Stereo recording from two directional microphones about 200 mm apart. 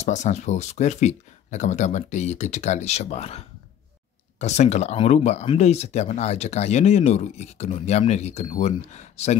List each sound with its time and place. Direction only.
0.0 s speech: 35° left (ahead or behind)